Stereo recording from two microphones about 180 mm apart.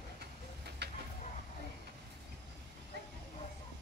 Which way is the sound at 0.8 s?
65° right (ahead or behind).